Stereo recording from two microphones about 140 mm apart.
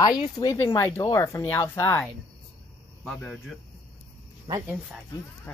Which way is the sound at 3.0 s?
10° left (ahead or behind).